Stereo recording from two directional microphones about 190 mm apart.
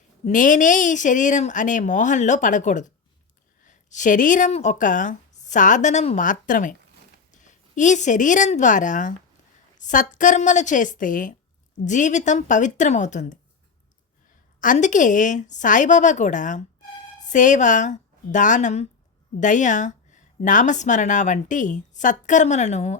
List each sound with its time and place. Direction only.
0.3 s a woman's voice: 45° left (ahead or behind)
14.6 s speech: 40° left (ahead or behind)